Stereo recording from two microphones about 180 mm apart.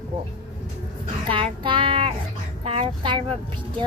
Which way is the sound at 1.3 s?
30° right (ahead or behind).